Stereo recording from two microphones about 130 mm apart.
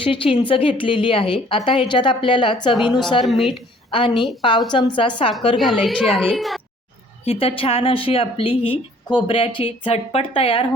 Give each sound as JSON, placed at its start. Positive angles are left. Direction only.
{"t": 0.0, "sound": "a woman's voice", "side_deg": 45}
{"t": 3.2, "sound": "speech", "side_deg": 0}
{"t": 3.5, "sound": "a woman's voice", "side_deg": 40}
{"t": 4.1, "sound": "speech", "side_deg": 0}
{"t": 4.4, "sound": "a woman's voice", "side_deg": 35}
{"t": 5.5, "sound": "speech", "side_deg": 0}
{"t": 7.3, "sound": "a woman's voice", "side_deg": 45}